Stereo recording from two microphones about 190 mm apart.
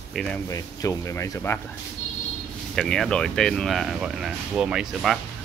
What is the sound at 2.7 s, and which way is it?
Speech, 5° left (ahead or behind).